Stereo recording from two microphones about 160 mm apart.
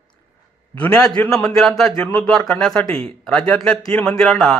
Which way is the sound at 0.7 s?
5° left (ahead or behind).